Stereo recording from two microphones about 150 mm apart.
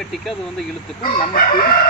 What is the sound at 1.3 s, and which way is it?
Chicken, 75° left (ahead or behind).